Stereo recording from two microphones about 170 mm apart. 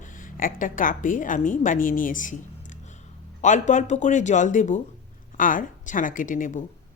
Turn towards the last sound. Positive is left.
turn(degrees=50)  # may be behind; listen again after turning